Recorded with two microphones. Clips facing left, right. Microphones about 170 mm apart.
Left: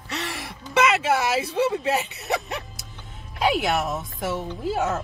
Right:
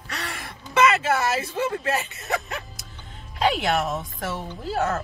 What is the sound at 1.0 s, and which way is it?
A woman's voice, 15° left (ahead or behind).